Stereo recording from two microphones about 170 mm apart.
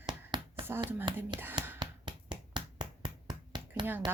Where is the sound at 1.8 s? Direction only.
25° right (ahead or behind).